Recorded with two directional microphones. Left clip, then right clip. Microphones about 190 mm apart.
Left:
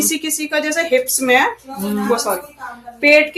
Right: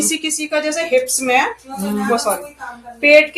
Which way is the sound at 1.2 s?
35° left (ahead or behind).